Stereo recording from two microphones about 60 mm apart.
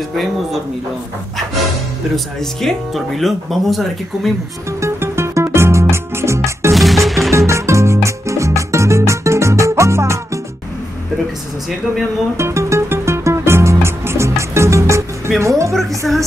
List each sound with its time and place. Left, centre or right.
2.1 s speech: centre
4.7 s music: right
6.7 s music: centre
7.3 s music: right
12.4 s music: right
15.4 s a woman's voice: right
16.0 s speech: centre